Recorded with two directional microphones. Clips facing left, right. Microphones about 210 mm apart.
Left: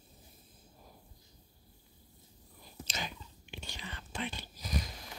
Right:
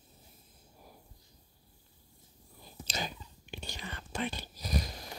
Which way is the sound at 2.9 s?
35° right (ahead or behind).